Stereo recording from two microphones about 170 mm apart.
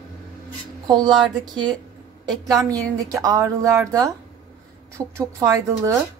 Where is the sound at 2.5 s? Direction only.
20° right (ahead or behind).